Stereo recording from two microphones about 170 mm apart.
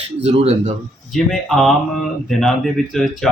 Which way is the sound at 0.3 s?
40° right (ahead or behind).